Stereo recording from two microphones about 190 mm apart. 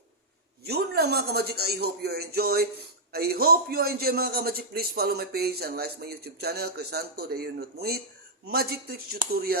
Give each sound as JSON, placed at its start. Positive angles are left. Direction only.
{"t": 0.6, "sound": "a man's voice", "side_deg": -55}